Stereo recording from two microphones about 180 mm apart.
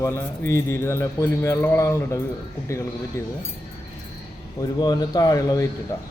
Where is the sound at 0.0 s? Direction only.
15° left (ahead or behind).